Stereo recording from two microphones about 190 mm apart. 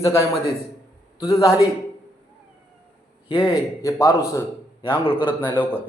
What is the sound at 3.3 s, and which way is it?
A man's voice, 20° left (ahead or behind).